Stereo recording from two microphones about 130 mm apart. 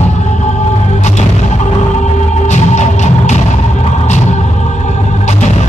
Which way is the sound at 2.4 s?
65° left (ahead or behind).